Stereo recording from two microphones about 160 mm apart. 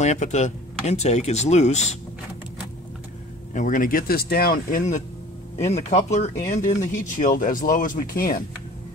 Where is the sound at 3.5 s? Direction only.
55° left (ahead or behind).